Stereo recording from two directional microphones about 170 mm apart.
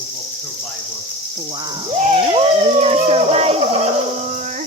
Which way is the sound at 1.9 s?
35° right (ahead or behind).